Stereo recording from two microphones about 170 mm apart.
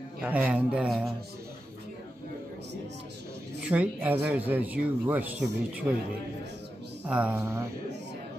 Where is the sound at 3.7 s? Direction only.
10° right (ahead or behind).